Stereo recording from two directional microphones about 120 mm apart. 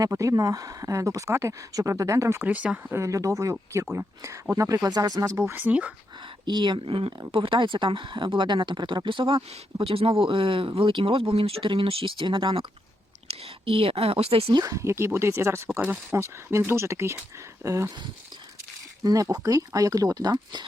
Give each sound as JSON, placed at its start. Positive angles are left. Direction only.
{"t": 0.0, "sound": "speech", "side_deg": -25}
{"t": 3.0, "sound": "speech", "side_deg": -25}
{"t": 6.4, "sound": "speech", "side_deg": -40}
{"t": 14.5, "sound": "speech", "side_deg": -30}
{"t": 19.0, "sound": "speech", "side_deg": -30}